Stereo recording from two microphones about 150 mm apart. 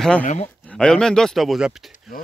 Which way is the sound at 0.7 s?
5° left (ahead or behind).